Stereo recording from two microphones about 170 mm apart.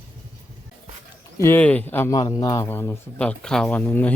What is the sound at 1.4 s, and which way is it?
A man's voice, 10° left (ahead or behind).